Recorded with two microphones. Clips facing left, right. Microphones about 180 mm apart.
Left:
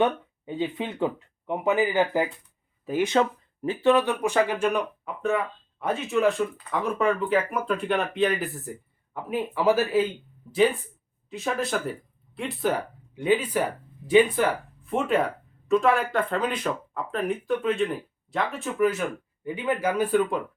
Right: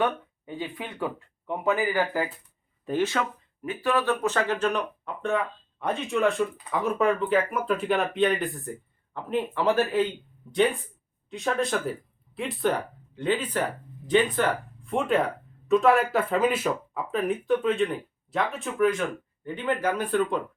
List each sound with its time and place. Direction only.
0.0 s speech: 20° left (ahead or behind)
2.8 s speech: 10° left (ahead or behind)
3.6 s speech: 25° left (ahead or behind); by 10.1 s 5° left (ahead or behind)
11.3 s speech: 5° left (ahead or behind)
13.1 s speech: 10° left (ahead or behind)